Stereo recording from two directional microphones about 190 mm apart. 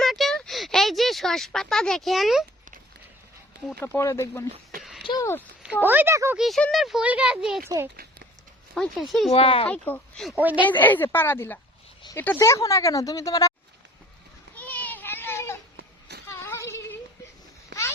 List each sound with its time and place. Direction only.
0.0 s a sound: centre (ahead or behind)
3.8 s speech: 15° left (ahead or behind)
5.8 s speech: 10° right (ahead or behind)
6.4 s speech: centre (ahead or behind)
8.7 s speech: centre (ahead or behind)
9.3 s speech: 30° left (ahead or behind)
9.6 s speech: 10° left (ahead or behind)
10.3 s speech: 10° right (ahead or behind)
10.6 s speech: 10° left (ahead or behind)
14.5 s children playing: 10° left (ahead or behind)
16.3 s a sound: 15° left (ahead or behind)